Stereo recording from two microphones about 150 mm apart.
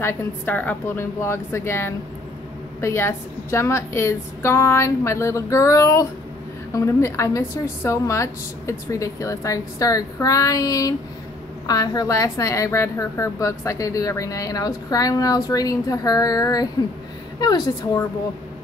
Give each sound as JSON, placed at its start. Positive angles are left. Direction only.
{"t": 0.0, "sound": "a woman's voice", "side_deg": 15}